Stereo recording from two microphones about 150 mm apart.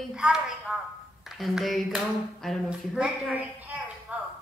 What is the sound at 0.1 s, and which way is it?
Mantra, 5° right (ahead or behind).